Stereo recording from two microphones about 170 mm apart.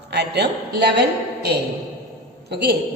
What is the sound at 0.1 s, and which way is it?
A woman's voice, 75° right (ahead or behind).